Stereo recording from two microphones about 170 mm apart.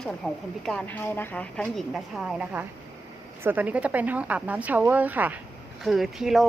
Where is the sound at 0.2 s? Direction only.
5° left (ahead or behind).